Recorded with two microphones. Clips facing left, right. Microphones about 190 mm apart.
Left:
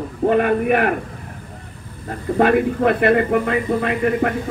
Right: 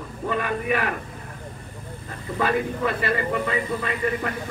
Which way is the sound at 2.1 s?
55° left (ahead or behind).